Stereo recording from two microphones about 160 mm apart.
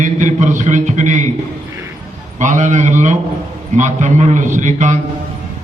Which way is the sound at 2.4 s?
50° right (ahead or behind).